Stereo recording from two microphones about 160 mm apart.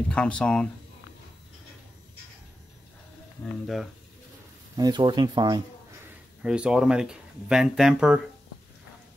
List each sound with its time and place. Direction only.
0.1 s speech: 5° left (ahead or behind)
3.6 s speech: centre (ahead or behind)
4.7 s speech: 25° right (ahead or behind)
6.4 s speech: 5° right (ahead or behind)